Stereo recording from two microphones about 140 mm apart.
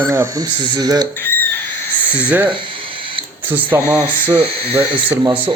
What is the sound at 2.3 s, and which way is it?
Speech, 10° right (ahead or behind).